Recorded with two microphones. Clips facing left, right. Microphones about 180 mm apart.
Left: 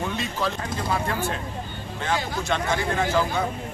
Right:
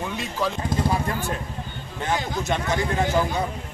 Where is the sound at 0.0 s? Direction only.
5° right (ahead or behind).